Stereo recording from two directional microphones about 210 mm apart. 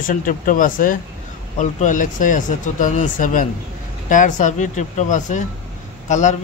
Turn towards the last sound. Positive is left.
turn(degrees=35)  # may be behind; listen again after turning